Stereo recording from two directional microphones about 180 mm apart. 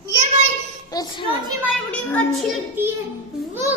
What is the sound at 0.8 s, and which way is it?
Speech, 20° left (ahead or behind).